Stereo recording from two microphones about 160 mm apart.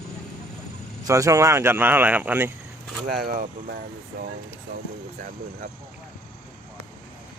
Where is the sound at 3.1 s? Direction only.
75° right (ahead or behind).